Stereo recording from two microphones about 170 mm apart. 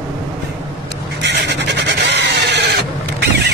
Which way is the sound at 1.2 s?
90° right.